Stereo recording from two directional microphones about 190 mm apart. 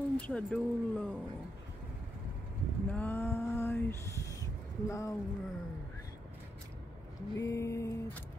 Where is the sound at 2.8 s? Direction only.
10° left (ahead or behind).